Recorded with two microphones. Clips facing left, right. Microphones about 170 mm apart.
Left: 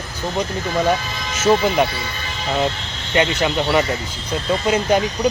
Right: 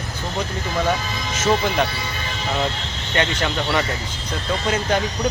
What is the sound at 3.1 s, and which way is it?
Speech, 15° left (ahead or behind).